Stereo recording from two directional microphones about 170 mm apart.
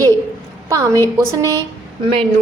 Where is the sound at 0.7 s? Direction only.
20° right (ahead or behind).